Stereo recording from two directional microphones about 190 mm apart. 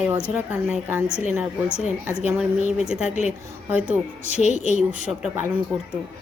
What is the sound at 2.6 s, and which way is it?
Speech, 35° left (ahead or behind).